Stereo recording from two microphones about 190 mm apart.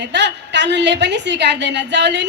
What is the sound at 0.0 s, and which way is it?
A woman's voice, 65° right (ahead or behind).